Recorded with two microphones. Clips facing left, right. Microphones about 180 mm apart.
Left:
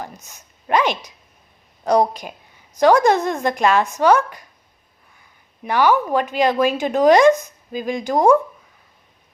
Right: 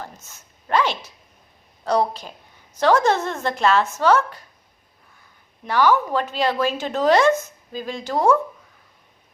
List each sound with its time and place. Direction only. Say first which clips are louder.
0.0 s a sound: left 3 dB; 15° left (ahead or behind)
1.8 s speech: left 4 dB; 15° left (ahead or behind)
5.6 s speech: left 2 dB; 15° left (ahead or behind)